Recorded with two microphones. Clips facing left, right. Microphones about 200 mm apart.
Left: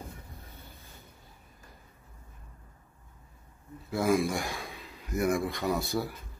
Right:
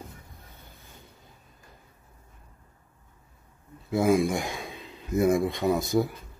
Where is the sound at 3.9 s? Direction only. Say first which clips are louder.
Right 4 dB; 15° right (ahead or behind).